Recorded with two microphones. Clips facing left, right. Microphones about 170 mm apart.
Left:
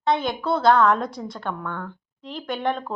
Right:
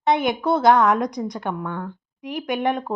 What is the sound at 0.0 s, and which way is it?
A woman's voice, 20° right (ahead or behind).